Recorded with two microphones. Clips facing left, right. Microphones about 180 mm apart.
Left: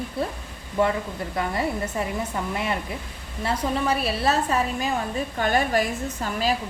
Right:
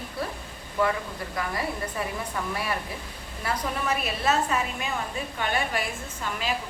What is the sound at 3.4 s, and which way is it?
A woman's voice, 30° left (ahead or behind).